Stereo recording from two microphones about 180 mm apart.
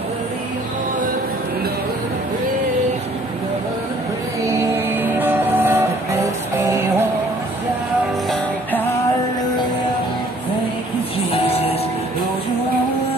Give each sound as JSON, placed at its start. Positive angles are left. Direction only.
{"t": 4.4, "sound": "music", "side_deg": -15}
{"t": 8.3, "sound": "music", "side_deg": 10}
{"t": 11.3, "sound": "music", "side_deg": 35}